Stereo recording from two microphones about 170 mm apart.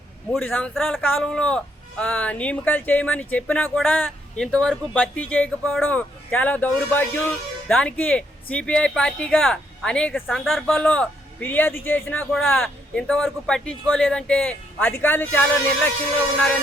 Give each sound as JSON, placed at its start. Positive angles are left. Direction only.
{"t": 0.3, "sound": "speech", "side_deg": 10}